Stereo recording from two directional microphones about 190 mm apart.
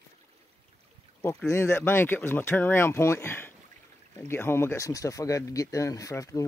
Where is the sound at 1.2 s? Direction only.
10° left (ahead or behind).